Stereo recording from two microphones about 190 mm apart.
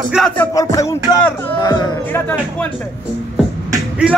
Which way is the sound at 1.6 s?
20° left (ahead or behind).